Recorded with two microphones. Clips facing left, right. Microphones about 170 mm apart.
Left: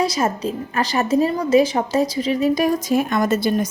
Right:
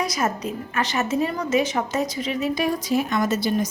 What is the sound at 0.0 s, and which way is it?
A woman's voice, 30° left (ahead or behind).